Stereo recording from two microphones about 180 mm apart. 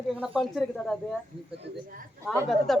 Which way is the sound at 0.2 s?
Centre (ahead or behind).